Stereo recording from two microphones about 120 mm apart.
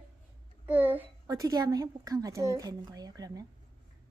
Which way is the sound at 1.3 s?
30° right (ahead or behind).